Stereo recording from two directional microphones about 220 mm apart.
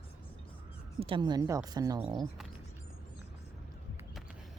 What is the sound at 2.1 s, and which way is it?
Speech, centre (ahead or behind).